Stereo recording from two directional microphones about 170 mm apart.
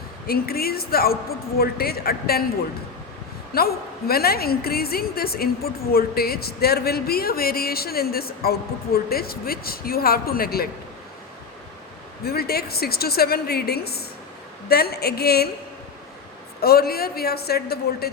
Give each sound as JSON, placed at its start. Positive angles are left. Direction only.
{"t": 0.3, "sound": "a woman's voice", "side_deg": 65}
{"t": 3.5, "sound": "a woman's voice", "side_deg": 65}
{"t": 12.2, "sound": "a woman's voice", "side_deg": 65}
{"t": 16.6, "sound": "a woman's voice", "side_deg": 65}